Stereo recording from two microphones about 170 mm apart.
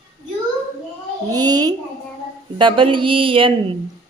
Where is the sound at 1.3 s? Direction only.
25° right (ahead or behind).